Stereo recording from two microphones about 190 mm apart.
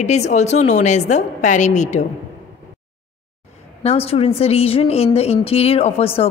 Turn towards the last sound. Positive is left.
turn(degrees=30)  # may be behind; listen again after turning